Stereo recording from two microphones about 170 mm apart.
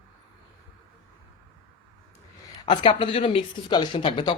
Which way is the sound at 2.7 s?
30° left (ahead or behind).